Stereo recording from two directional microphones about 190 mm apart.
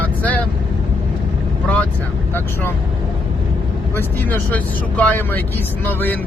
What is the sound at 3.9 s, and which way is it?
Speech, 10° left (ahead or behind).